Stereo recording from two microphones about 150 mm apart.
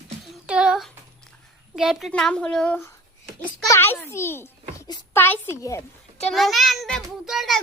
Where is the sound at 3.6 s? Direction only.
15° left (ahead or behind).